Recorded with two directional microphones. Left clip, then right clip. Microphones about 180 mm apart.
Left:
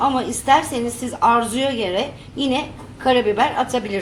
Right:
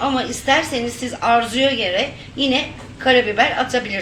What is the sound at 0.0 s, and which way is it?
A woman's voice, 60° left (ahead or behind).